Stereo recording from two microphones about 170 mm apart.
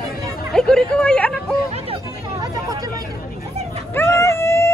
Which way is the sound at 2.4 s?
20° right (ahead or behind).